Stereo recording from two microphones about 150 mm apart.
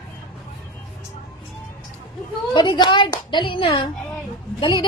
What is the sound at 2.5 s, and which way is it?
A woman's voice, 30° left (ahead or behind).